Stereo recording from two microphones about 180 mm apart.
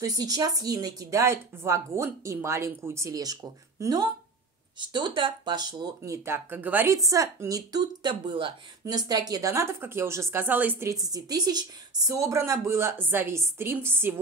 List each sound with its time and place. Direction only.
0.0 s a woman's voice: 20° right (ahead or behind)